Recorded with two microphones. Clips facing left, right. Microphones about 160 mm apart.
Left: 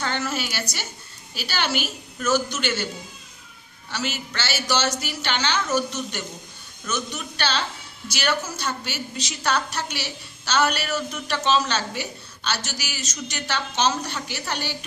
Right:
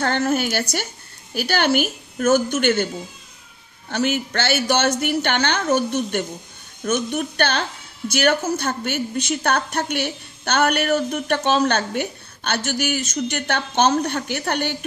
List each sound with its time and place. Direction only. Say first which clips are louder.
0.0 s a woman's voice: right 7 dB; 55° right (ahead or behind)
3.9 s a woman's voice: right 9 dB; 55° right (ahead or behind)